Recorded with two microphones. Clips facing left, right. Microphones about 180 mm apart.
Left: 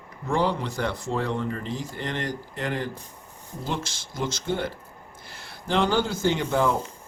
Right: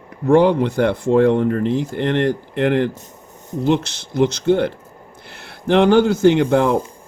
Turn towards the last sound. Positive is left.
turn(degrees=-60)  # may be behind; listen again after turning